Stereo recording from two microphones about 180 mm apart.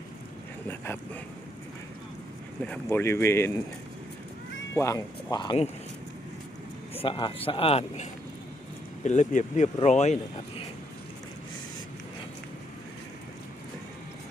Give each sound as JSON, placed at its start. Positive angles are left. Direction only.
{"t": 0.7, "sound": "speech", "side_deg": 10}
{"t": 2.6, "sound": "speech", "side_deg": 10}
{"t": 4.7, "sound": "speech", "side_deg": 15}
{"t": 6.9, "sound": "a man's voice", "side_deg": 30}
{"t": 9.0, "sound": "a man's voice", "side_deg": 40}